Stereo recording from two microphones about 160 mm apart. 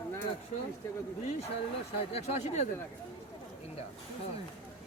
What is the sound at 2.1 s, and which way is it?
Speech, 45° left (ahead or behind).